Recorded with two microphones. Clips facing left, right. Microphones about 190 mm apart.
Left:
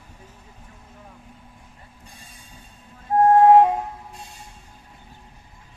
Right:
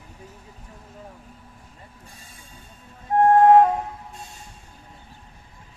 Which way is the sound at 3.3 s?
15° left (ahead or behind).